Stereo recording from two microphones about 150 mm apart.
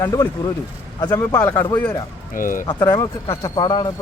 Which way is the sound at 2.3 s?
65° left (ahead or behind).